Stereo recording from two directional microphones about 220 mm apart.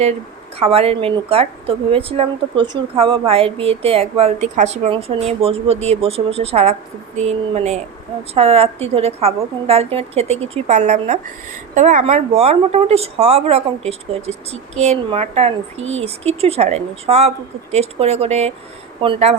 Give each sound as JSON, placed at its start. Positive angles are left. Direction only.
{"t": 0.6, "sound": "a woman's voice", "side_deg": -25}